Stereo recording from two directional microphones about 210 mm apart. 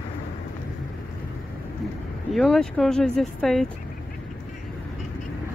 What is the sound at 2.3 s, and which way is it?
Speech, centre (ahead or behind).